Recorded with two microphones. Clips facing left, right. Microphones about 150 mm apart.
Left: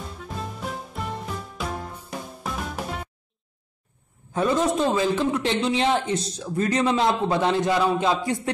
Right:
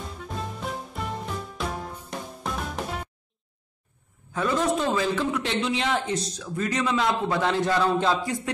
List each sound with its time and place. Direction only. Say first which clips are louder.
0.0 s music: even; centre (ahead or behind)
4.3 s a man's voice: left 2 dB; 25° left (ahead or behind)